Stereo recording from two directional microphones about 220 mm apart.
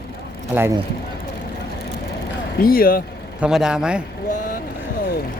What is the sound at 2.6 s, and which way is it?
Speech, 40° left (ahead or behind).